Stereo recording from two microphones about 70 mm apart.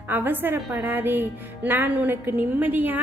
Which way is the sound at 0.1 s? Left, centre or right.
Right.